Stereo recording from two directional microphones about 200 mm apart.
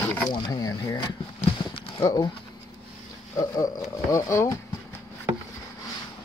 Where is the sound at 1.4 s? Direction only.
25° left (ahead or behind).